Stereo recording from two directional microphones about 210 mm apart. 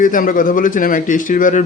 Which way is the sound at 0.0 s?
40° left (ahead or behind).